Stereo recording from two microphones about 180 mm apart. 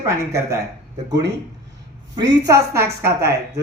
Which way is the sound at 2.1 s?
25° right (ahead or behind).